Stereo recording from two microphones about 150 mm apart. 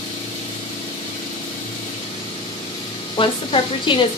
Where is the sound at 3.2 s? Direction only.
35° left (ahead or behind).